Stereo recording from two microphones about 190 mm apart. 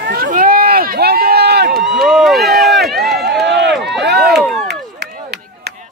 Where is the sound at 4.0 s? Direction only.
60° right (ahead or behind).